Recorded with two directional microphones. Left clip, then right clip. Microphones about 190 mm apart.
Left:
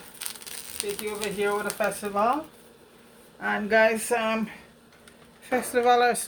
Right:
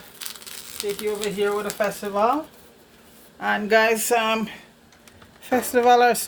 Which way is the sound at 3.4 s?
55° right (ahead or behind).